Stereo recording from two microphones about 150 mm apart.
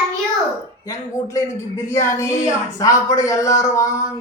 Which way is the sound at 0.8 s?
20° left (ahead or behind).